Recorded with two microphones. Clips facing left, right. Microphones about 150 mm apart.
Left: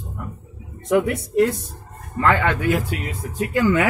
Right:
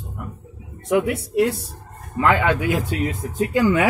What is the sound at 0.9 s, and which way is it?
Speech, 10° right (ahead or behind).